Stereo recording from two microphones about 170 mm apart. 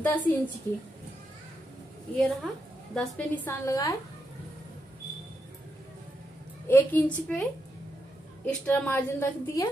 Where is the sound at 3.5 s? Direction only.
20° left (ahead or behind).